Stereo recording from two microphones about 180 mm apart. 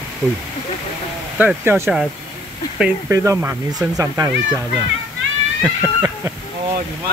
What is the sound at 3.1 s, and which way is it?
Speech, 15° right (ahead or behind).